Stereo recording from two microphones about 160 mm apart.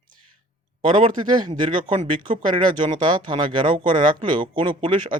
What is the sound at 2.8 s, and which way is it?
Speech, 30° right (ahead or behind).